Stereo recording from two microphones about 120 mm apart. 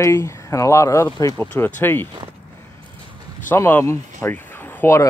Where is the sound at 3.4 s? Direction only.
15° left (ahead or behind).